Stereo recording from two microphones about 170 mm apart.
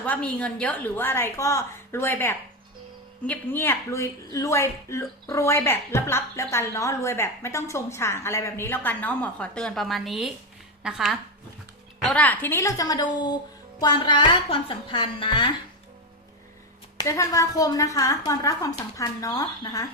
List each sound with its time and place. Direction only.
0.0 s a woman's voice: 10° left (ahead or behind)
12.0 s a woman's voice: 10° left (ahead or behind); by 15.4 s 30° left (ahead or behind)
17.0 s a woman's voice: 20° left (ahead or behind)